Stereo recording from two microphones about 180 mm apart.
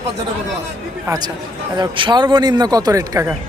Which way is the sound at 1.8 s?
25° right (ahead or behind).